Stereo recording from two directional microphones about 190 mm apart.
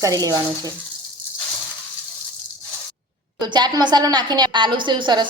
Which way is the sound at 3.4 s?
20° right (ahead or behind).